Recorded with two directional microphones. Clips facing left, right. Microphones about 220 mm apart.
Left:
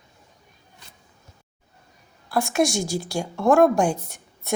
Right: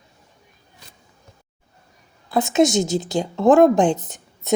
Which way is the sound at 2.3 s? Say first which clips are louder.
Right 5 dB; 20° right (ahead or behind).